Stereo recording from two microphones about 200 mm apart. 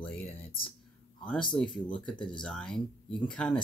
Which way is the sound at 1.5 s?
5° left (ahead or behind).